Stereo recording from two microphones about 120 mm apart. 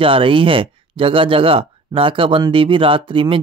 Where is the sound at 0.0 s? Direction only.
45° right (ahead or behind).